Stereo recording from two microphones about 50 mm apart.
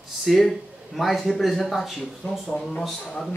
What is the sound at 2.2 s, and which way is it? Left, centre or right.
Speech, left.